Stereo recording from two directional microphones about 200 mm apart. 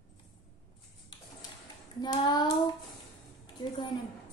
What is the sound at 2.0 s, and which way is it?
Child singing, 20° left (ahead or behind).